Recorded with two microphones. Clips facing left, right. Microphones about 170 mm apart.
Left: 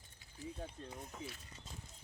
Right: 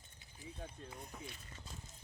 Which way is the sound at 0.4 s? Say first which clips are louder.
Left 5 dB; 15° right (ahead or behind).